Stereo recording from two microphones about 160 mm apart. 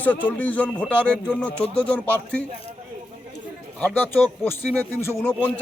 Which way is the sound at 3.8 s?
10° left (ahead or behind).